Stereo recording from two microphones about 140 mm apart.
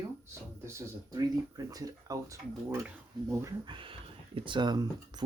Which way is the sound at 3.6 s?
35° right (ahead or behind).